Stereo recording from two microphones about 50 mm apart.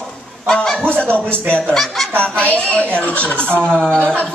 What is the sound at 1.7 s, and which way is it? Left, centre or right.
Speech, centre.